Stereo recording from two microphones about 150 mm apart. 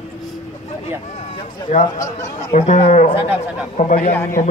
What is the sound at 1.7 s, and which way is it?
A man's voice, 50° left (ahead or behind).